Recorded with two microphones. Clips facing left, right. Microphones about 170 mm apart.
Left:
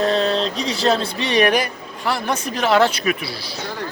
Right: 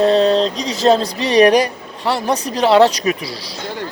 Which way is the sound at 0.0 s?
35° right (ahead or behind).